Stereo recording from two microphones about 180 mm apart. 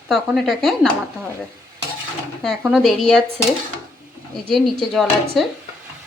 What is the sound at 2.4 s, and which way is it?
Speech, centre (ahead or behind).